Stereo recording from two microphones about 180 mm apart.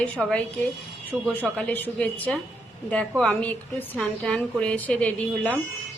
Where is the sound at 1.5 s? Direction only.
5° left (ahead or behind).